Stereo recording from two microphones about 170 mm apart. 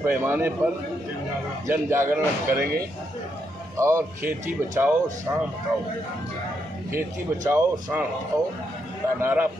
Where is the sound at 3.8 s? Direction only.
15° right (ahead or behind).